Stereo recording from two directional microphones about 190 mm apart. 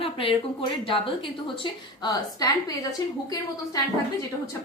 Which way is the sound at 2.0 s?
20° left (ahead or behind).